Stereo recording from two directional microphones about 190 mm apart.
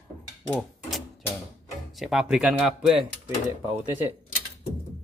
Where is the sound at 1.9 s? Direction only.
Centre (ahead or behind).